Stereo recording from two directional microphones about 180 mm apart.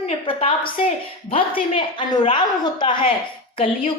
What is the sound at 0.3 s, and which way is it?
A woman's voice, 30° left (ahead or behind).